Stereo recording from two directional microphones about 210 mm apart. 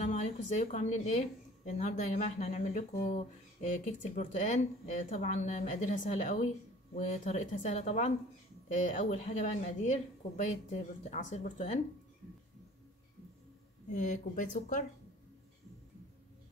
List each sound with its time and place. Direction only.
0.0 s speech: 35° left (ahead or behind)
13.8 s speech: 35° left (ahead or behind)